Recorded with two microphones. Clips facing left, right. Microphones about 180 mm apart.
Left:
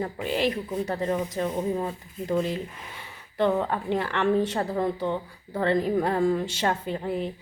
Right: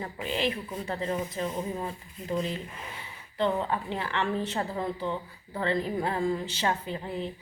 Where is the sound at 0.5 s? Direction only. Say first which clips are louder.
Left 6 dB; 45° left (ahead or behind).